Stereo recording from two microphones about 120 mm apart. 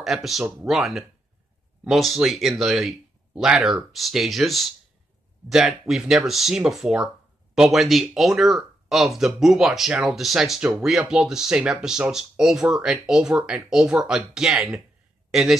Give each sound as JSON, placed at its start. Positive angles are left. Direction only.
{"t": 0.0, "sound": "speech", "side_deg": 0}